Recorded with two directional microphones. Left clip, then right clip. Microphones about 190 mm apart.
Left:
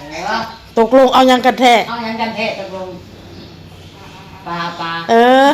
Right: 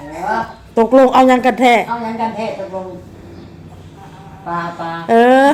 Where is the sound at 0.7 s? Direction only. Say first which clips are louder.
Even; 5° right (ahead or behind).